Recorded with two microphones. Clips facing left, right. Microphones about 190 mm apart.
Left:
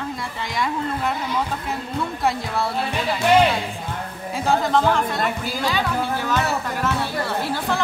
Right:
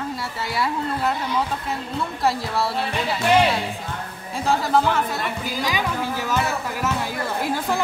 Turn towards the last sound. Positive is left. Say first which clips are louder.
# even
turn(degrees=-10)  # may be behind; listen again after turning